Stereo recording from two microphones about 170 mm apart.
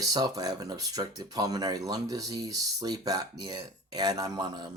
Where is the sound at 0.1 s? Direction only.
20° right (ahead or behind).